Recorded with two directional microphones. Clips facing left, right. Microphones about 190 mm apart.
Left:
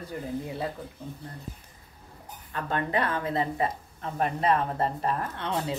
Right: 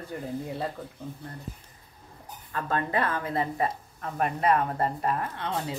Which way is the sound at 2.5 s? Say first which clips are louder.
Even; 25° left (ahead or behind).